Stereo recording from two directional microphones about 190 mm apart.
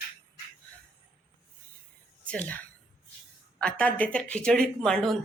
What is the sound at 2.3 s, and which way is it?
Speech, 5° left (ahead or behind).